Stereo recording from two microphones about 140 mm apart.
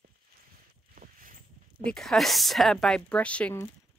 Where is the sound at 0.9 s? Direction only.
80° right.